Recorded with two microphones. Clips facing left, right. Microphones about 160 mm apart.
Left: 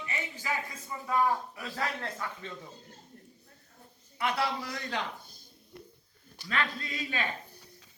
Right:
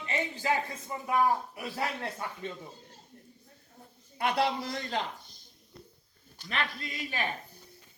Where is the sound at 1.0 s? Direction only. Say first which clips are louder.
Right 1 dB; 20° right (ahead or behind).